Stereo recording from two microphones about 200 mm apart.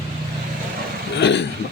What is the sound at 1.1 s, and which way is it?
Speech, 60° left (ahead or behind).